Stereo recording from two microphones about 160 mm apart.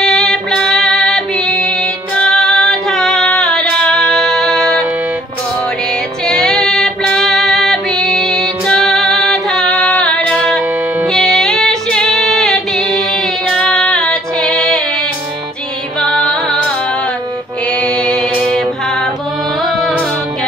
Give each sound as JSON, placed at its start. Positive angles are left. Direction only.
{"t": 0.0, "sound": "music", "side_deg": 5}
{"t": 6.2, "sound": "female singing", "side_deg": 5}
{"t": 11.1, "sound": "music", "side_deg": 5}
{"t": 16.0, "sound": "music", "side_deg": 5}
{"t": 17.7, "sound": "music", "side_deg": 5}